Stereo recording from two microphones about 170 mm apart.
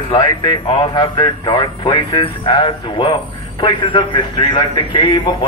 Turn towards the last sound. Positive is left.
turn(degrees=30)  # may be behind; listen again after turning